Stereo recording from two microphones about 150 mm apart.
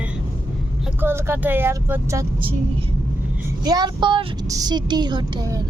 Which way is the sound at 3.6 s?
25° right (ahead or behind).